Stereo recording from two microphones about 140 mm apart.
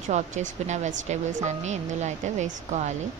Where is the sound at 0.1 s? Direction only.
60° right (ahead or behind).